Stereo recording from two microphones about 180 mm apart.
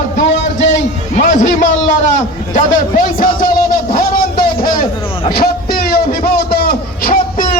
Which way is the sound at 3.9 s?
50° left (ahead or behind).